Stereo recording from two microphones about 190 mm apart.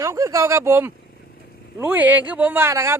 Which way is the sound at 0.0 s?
15° right (ahead or behind).